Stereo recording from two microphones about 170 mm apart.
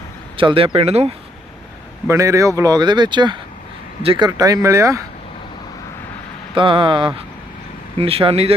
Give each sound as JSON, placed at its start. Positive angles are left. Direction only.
{"t": 0.3, "sound": "speech", "side_deg": -30}
{"t": 2.0, "sound": "speech", "side_deg": -15}
{"t": 4.3, "sound": "speech", "side_deg": -20}
{"t": 6.5, "sound": "speech", "side_deg": -30}